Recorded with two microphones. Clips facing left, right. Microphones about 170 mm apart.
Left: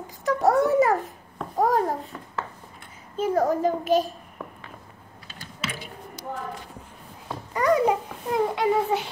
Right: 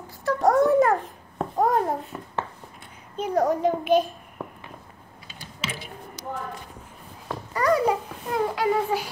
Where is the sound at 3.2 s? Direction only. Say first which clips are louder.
Even; 5° left (ahead or behind).